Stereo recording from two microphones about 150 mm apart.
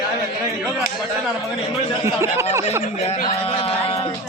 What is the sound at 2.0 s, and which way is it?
Speech, 20° right (ahead or behind).